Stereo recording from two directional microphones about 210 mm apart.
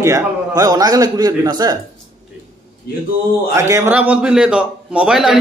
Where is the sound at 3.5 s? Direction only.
15° right (ahead or behind).